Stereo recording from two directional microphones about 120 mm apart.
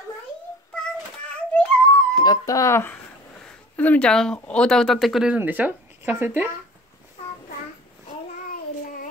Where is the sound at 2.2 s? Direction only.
30° left (ahead or behind).